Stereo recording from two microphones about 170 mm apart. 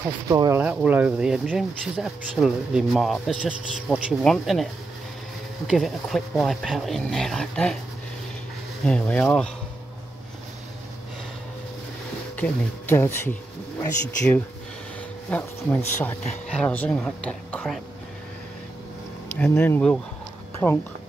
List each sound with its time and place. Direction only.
0.0 s speech: 20° right (ahead or behind)
0.6 s speech: 10° right (ahead or behind)
5.7 s speech: centre (ahead or behind)
8.8 s speech: 5° left (ahead or behind)
12.4 s speech: 10° left (ahead or behind)
15.2 s speech: 10° left (ahead or behind)
19.3 s speech: 10° left (ahead or behind)